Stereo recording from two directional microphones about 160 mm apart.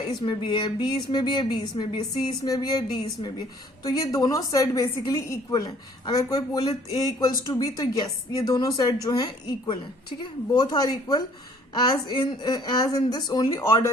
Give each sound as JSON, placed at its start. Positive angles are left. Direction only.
{"t": 0.1, "sound": "a woman's voice", "side_deg": 30}